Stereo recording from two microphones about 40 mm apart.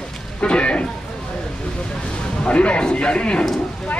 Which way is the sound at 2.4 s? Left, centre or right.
Left.